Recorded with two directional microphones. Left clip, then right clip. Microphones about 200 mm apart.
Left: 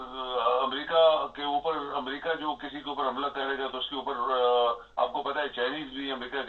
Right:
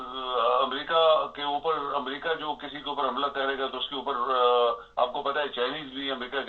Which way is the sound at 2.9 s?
45° right (ahead or behind).